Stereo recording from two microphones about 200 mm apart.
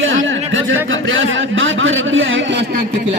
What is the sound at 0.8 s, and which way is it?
A man's voice, 75° right (ahead or behind).